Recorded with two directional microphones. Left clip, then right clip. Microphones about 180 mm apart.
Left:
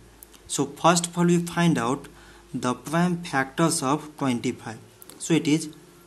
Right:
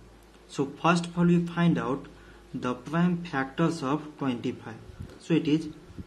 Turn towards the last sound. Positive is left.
turn(degrees=35)  # may be behind; listen again after turning